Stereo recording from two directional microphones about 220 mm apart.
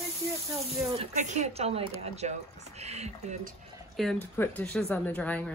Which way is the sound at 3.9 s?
Centre (ahead or behind).